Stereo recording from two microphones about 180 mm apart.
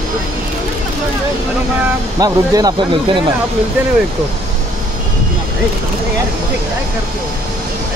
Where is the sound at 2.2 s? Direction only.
20° right (ahead or behind).